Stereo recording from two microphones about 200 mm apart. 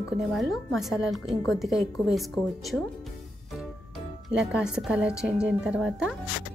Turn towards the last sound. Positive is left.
turn(degrees=-5)  # may be behind; listen again after turning